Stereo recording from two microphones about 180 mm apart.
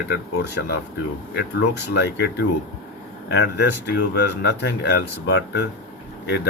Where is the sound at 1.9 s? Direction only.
70° left (ahead or behind).